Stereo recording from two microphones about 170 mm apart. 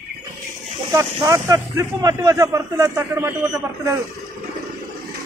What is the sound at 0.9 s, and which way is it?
A man's voice, 20° right (ahead or behind).